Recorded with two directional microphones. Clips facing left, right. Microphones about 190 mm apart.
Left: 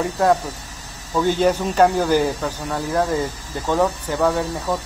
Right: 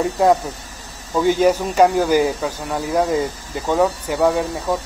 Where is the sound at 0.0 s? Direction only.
15° right (ahead or behind).